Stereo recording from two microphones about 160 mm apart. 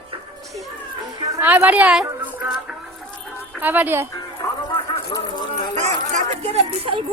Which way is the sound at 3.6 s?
10° right (ahead or behind).